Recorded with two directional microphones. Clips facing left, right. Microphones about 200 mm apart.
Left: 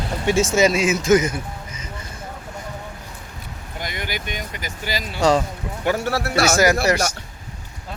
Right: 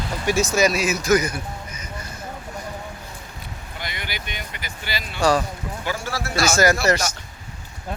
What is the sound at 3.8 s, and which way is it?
Speech, 45° left (ahead or behind).